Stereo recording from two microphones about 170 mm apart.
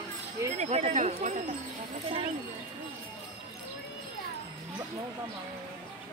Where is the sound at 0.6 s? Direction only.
40° right (ahead or behind).